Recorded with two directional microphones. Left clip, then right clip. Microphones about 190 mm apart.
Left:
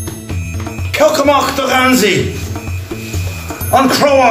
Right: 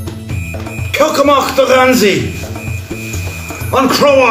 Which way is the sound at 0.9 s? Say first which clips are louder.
Even; 15° left (ahead or behind).